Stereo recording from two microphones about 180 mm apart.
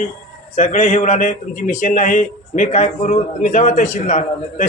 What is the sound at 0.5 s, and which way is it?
A man's voice, 40° left (ahead or behind).